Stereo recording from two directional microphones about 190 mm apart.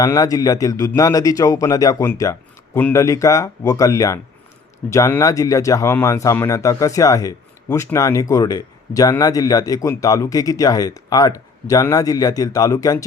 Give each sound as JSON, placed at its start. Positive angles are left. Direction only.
{"t": 0.0, "sound": "speech", "side_deg": 20}